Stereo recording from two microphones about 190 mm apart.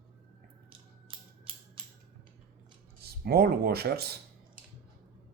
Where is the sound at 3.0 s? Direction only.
55° right (ahead or behind).